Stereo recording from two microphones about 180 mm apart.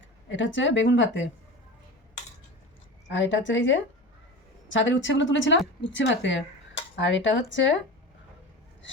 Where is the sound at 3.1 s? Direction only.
90° left.